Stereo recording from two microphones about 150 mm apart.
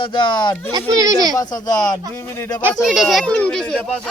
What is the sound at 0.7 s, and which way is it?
Speech, 25° right (ahead or behind).